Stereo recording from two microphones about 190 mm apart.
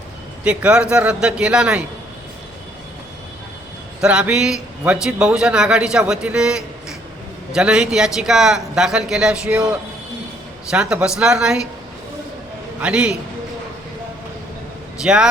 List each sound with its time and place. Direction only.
0.4 s a man's voice: 5° right (ahead or behind)
4.0 s a man's voice: 5° right (ahead or behind)
12.8 s a man's voice: 5° right (ahead or behind)
15.0 s a man's voice: 5° right (ahead or behind)